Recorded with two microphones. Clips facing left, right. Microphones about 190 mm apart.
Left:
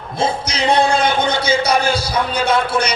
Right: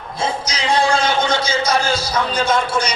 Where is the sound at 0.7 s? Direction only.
60° left (ahead or behind).